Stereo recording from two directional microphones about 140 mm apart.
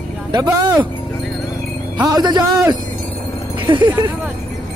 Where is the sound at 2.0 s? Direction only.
30° right (ahead or behind).